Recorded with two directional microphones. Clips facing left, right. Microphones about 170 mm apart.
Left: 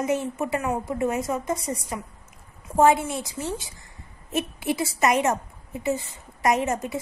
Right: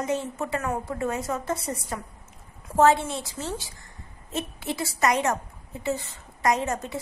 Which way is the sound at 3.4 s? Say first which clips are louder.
Left 2 dB; 20° left (ahead or behind).